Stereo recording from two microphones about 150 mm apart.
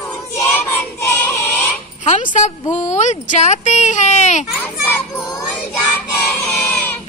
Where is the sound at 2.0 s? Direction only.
50° left (ahead or behind).